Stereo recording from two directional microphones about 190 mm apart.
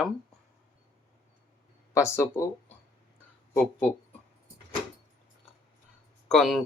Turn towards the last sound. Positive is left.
turn(degrees=0)  # may be behind; listen again after turning